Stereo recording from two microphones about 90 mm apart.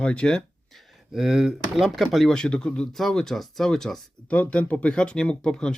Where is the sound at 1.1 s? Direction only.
5° right (ahead or behind).